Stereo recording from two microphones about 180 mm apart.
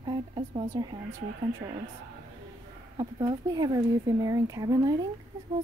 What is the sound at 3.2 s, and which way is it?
A woman's voice, 20° right (ahead or behind).